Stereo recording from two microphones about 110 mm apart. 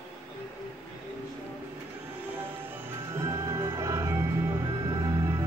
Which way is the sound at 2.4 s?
20° right (ahead or behind).